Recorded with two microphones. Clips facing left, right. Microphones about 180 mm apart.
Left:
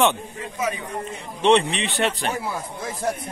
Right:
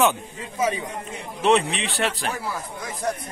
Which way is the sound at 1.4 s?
Centre (ahead or behind).